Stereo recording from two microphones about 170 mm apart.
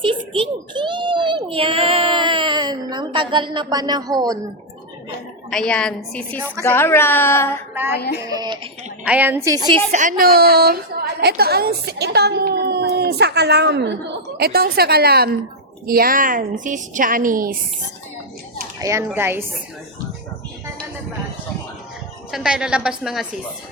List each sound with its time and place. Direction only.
0.0 s a sound: 30° right (ahead or behind)
5.5 s a woman's voice: 5° left (ahead or behind)
7.7 s music: 15° right (ahead or behind)
8.3 s speech: 25° right (ahead or behind)
9.0 s a woman's voice: 10° right (ahead or behind)
9.9 s a woman's voice: 50° right (ahead or behind); by 13.9 s 80° right
14.3 s a woman's voice: 65° right (ahead or behind)
18.8 s a woman's voice: 15° right (ahead or behind)
22.3 s a woman's voice: 5° right (ahead or behind)